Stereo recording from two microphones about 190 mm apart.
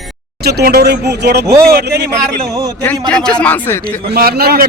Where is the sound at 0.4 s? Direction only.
55° right (ahead or behind).